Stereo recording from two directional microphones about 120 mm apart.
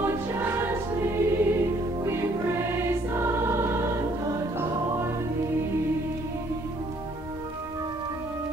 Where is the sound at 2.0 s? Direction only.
20° right (ahead or behind).